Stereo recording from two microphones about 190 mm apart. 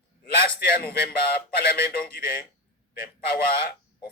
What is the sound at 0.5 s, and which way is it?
Speech, 55° left (ahead or behind).